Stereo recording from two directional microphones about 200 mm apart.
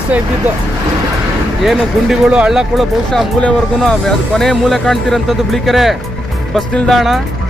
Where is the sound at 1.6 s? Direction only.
Centre (ahead or behind).